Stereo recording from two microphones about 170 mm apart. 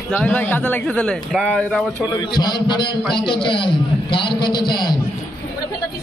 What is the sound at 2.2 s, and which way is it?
A man's voice, 25° left (ahead or behind).